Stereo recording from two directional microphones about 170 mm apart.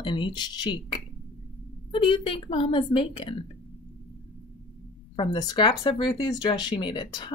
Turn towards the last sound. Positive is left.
turn(degrees=25)  # may be behind; listen again after turning